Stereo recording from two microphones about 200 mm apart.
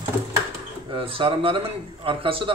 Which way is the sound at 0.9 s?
25° right (ahead or behind).